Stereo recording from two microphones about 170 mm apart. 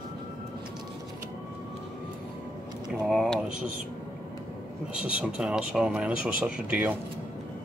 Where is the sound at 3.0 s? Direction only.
Centre (ahead or behind).